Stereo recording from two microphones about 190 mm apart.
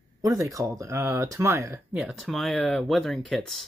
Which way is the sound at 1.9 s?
Centre (ahead or behind).